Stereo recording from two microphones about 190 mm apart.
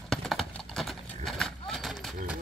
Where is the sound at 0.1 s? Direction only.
Centre (ahead or behind).